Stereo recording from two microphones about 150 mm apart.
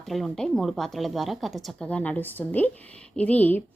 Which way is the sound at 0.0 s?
Centre (ahead or behind).